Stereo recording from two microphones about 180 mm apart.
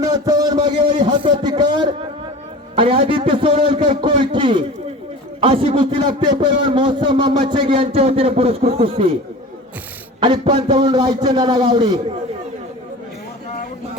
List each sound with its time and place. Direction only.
0.0 s a sound: 20° right (ahead or behind)
2.7 s a man's voice: 30° right (ahead or behind)
10.2 s a man's voice: 25° right (ahead or behind)